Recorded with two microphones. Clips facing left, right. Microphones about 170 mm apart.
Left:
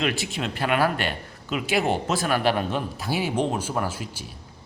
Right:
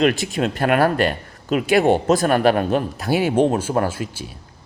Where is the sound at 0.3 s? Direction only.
50° right (ahead or behind).